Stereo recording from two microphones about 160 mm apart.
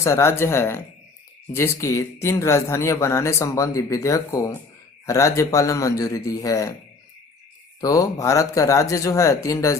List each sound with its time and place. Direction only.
0.0 s speech: 15° left (ahead or behind)
7.8 s speech: 20° left (ahead or behind)